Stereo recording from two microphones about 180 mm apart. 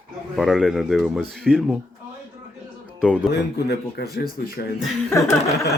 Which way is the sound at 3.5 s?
65° left (ahead or behind).